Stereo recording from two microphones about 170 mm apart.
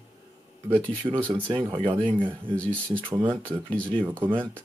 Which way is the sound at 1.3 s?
30° right (ahead or behind).